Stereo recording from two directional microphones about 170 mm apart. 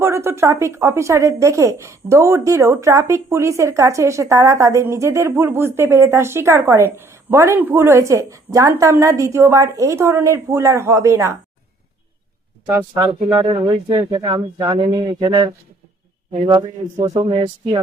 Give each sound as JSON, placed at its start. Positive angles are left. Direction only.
{"t": 0.0, "sound": "speech", "side_deg": -15}
{"t": 12.6, "sound": "speech", "side_deg": -15}
{"t": 13.3, "sound": "speech", "side_deg": -30}
{"t": 16.5, "sound": "speech", "side_deg": -25}